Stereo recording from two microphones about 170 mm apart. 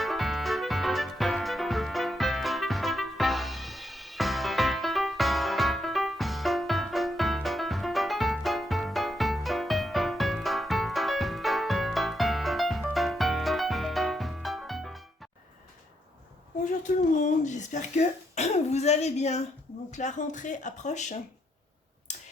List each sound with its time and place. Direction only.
0.0 s music: centre (ahead or behind)
16.8 s throat clearing: 45° left (ahead or behind)
19.9 s speech: 45° left (ahead or behind)